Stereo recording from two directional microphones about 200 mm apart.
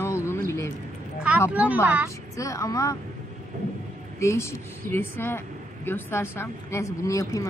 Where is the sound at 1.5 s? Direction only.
5° right (ahead or behind).